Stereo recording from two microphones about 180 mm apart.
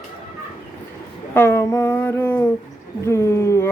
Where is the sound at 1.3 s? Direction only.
10° left (ahead or behind).